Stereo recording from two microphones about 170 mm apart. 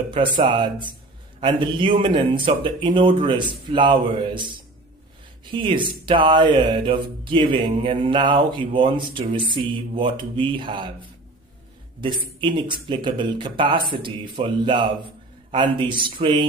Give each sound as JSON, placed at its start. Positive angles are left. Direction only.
{"t": 0.1, "sound": "speech", "side_deg": -30}